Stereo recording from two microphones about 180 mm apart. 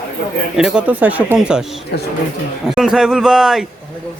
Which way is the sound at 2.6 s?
5° right (ahead or behind).